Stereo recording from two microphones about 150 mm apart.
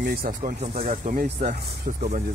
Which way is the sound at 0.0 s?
85° right.